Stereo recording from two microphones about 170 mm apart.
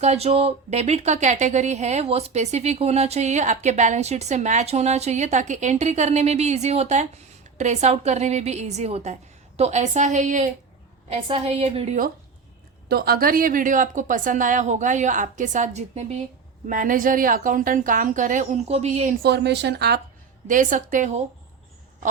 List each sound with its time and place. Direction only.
0.0 s a woman's voice: 40° right (ahead or behind)
11.1 s speech: 35° right (ahead or behind)
12.9 s a woman's voice: 65° right (ahead or behind); by 16.2 s 40° right (ahead or behind)
16.6 s a woman's voice: 50° right (ahead or behind)
19.2 s speech: 80° right
20.5 s a woman's voice: 50° right (ahead or behind)